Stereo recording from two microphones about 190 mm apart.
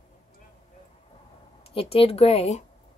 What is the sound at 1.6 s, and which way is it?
Speech, 30° left (ahead or behind).